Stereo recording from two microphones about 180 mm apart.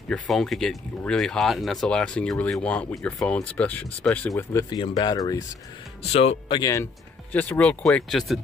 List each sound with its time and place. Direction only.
0.1 s speech: centre (ahead or behind)
4.6 s speech: 30° left (ahead or behind)
6.5 s speech: 20° left (ahead or behind)
7.3 s speech: 10° left (ahead or behind)